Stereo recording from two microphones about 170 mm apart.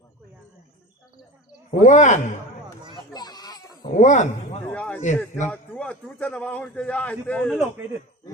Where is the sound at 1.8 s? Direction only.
45° left (ahead or behind).